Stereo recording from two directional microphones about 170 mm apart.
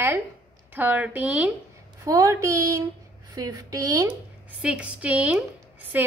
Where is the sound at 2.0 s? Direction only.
20° right (ahead or behind).